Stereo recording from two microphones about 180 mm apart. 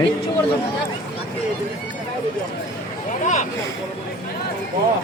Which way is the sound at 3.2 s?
45° left (ahead or behind).